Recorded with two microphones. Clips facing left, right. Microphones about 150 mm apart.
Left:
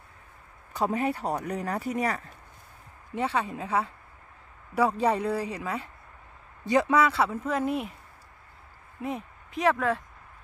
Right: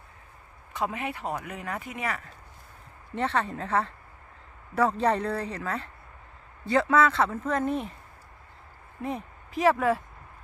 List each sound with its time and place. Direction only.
0.7 s speech: 35° left (ahead or behind)
3.2 s speech: 10° left (ahead or behind)
9.0 s speech: centre (ahead or behind)